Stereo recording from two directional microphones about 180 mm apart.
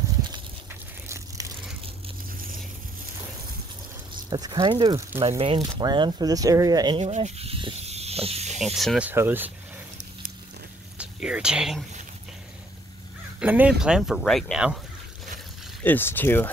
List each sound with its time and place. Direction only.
1.0 s crushing: 15° right (ahead or behind)
4.3 s speech: 25° right (ahead or behind)
7.0 s snake: 40° right (ahead or behind)
8.7 s speech: centre (ahead or behind)
11.0 s speech: 5° right (ahead or behind)
13.4 s speech: 10° right (ahead or behind)
15.8 s speech: 10° left (ahead or behind)